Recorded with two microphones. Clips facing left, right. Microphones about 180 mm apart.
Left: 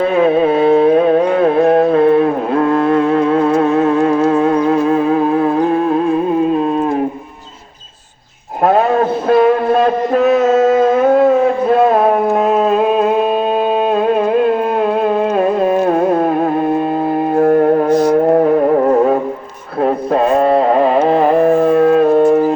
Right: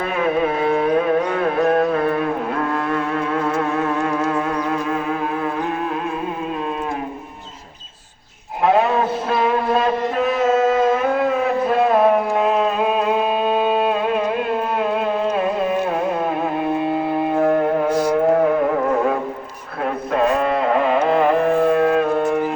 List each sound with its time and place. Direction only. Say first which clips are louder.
0.0 s music: left 8 dB; 30° left (ahead or behind)
8.6 s a sound: left 4 dB; 45° left (ahead or behind)
9.3 s music: left 8 dB; 45° left (ahead or behind)
10.4 s a sound: left 5 dB; 45° left (ahead or behind)
15.0 s music: left 6 dB; 45° left (ahead or behind)
17.3 s music: left 7 dB; 45° left (ahead or behind)